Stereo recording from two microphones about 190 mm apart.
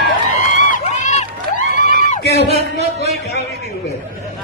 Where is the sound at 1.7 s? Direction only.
45° left (ahead or behind).